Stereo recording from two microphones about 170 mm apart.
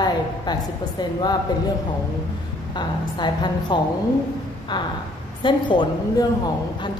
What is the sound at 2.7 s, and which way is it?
A woman's voice, 25° left (ahead or behind).